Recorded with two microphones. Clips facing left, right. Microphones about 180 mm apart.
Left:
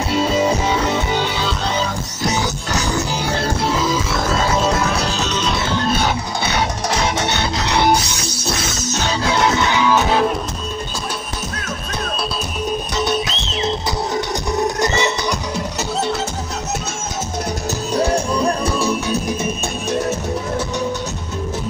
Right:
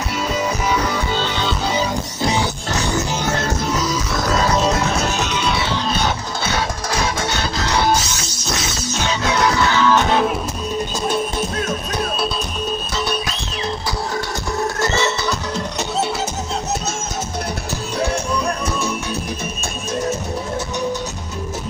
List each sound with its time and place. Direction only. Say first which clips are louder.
0.1 s music: left 6 dB; 30° left (ahead or behind)
3.3 s music: left 1 dB; 30° left (ahead or behind)
7.2 s music: left 2 dB; 20° left (ahead or behind)
9.3 s music: even; 20° left (ahead or behind); by 10.3 s centre (ahead or behind)
12.9 s music: left 3 dB; 20° left (ahead or behind)